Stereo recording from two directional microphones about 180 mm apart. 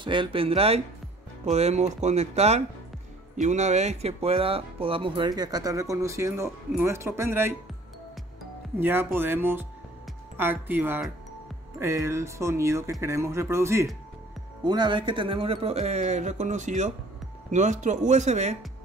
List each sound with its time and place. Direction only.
0.0 s speech: 25° right (ahead or behind)
8.7 s speech: 10° right (ahead or behind); by 18.6 s 40° right (ahead or behind)